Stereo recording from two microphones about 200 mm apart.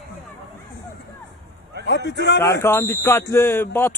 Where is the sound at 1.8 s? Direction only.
65° left (ahead or behind).